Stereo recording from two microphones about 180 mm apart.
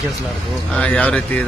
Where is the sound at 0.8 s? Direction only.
10° left (ahead or behind).